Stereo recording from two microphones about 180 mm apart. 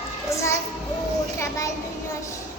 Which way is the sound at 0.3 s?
15° left (ahead or behind).